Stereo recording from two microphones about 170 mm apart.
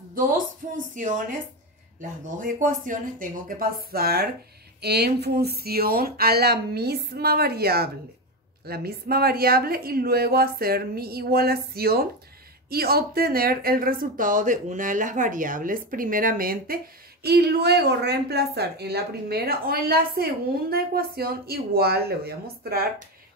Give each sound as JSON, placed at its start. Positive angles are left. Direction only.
{"t": 0.6, "sound": "a woman's voice", "side_deg": -45}